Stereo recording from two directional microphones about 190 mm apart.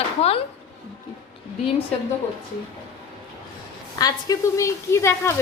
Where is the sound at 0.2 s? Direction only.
30° left (ahead or behind).